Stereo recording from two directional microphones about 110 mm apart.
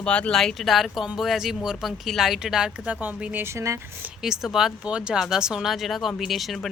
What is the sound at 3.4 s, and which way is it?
Speech, 25° right (ahead or behind).